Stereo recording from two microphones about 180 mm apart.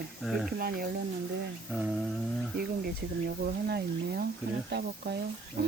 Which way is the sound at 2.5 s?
60° right (ahead or behind).